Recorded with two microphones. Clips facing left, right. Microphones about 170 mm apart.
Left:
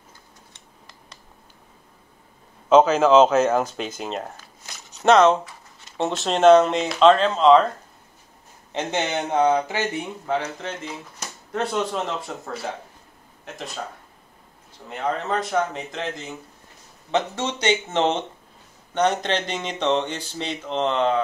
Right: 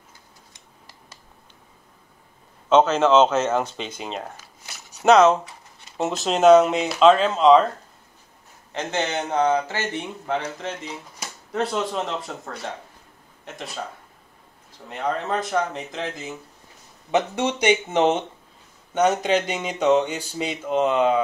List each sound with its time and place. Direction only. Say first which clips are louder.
2.7 s speech: left 2 dB; 5° left (ahead or behind)
8.7 s speech: left 1 dB; 15° left (ahead or behind)
10.2 s speech: left 1 dB; centre (ahead or behind)
14.9 s speech: even; centre (ahead or behind)
17.1 s speech: right 2 dB; 15° right (ahead or behind)